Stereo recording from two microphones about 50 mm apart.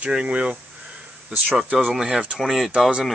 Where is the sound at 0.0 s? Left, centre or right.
Right.